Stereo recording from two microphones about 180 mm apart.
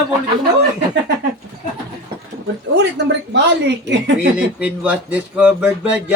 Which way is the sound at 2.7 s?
75° right (ahead or behind).